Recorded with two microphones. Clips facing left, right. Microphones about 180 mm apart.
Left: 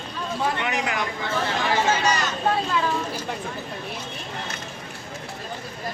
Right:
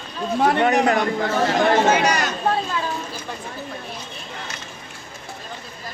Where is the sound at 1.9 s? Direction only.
65° right (ahead or behind).